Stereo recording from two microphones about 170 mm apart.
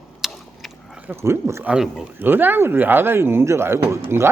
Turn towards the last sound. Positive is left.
turn(degrees=-15)  # may be behind; listen again after turning